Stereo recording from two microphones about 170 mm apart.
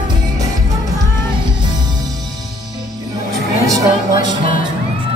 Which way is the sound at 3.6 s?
20° right (ahead or behind).